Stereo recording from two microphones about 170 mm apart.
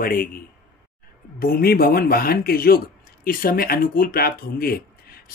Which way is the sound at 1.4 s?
60° left (ahead or behind).